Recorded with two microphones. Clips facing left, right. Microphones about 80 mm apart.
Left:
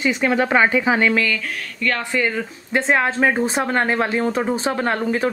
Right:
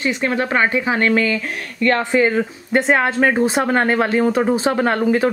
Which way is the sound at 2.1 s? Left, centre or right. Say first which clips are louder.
Right 6 dB; right.